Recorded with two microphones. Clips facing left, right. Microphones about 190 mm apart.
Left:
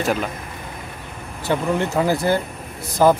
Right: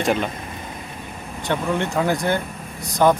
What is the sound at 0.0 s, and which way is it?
Speech, centre (ahead or behind).